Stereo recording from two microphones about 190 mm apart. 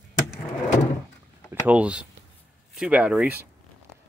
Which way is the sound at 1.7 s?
5° right (ahead or behind).